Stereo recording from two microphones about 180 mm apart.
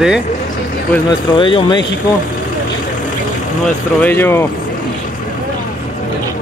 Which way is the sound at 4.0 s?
15° left (ahead or behind).